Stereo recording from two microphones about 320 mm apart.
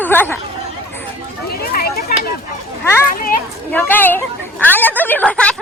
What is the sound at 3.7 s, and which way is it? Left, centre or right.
Speech, centre.